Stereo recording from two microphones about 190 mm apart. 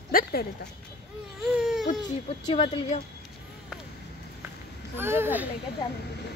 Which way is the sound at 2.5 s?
30° left (ahead or behind).